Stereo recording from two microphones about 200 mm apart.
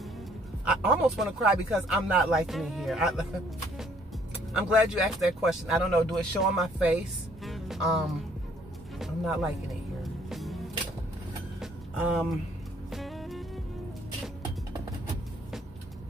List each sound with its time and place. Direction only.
0.7 s speech: centre (ahead or behind)
4.6 s speech: 5° right (ahead or behind)
10.3 s music: centre (ahead or behind)
11.6 s vehicle: 5° right (ahead or behind)
12.9 s music: centre (ahead or behind)